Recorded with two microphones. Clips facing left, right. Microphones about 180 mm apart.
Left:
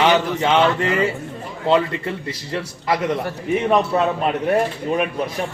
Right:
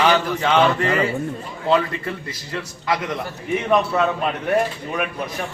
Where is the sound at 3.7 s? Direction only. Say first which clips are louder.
Even; 25° left (ahead or behind).